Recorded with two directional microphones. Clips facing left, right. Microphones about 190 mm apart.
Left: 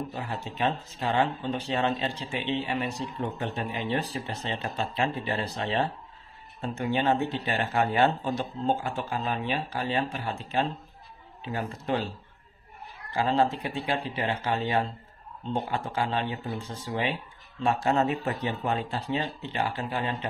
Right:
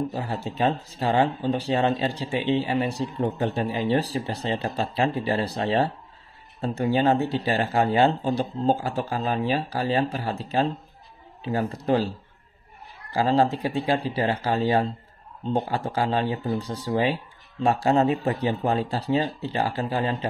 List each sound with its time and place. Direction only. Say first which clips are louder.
0.1 s speech: right 5 dB; 35° right (ahead or behind)
13.1 s speech: right 4 dB; 35° right (ahead or behind)